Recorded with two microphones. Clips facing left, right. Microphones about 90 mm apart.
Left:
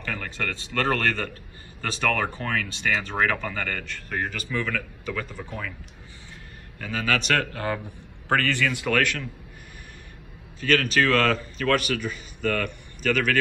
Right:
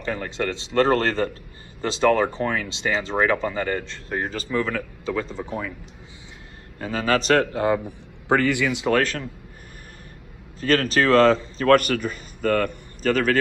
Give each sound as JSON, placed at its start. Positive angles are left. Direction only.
{"t": 0.0, "sound": "speech", "side_deg": -25}
{"t": 6.8, "sound": "speech", "side_deg": -35}
{"t": 8.3, "sound": "a man's voice", "side_deg": -15}
{"t": 8.9, "sound": "speech", "side_deg": -35}
{"t": 10.6, "sound": "speech", "side_deg": -35}
{"t": 11.7, "sound": "speech", "side_deg": -45}